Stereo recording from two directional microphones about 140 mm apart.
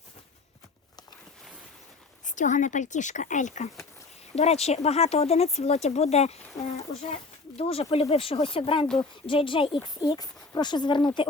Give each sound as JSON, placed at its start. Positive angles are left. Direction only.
{"t": 2.2, "sound": "speech", "side_deg": 65}
{"t": 4.4, "sound": "speech", "side_deg": 50}